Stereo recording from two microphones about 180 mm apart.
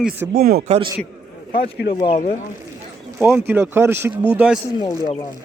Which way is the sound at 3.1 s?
10° right (ahead or behind).